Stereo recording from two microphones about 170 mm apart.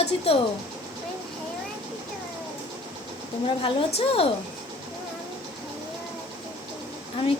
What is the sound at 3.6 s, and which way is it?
Speech, 35° left (ahead or behind).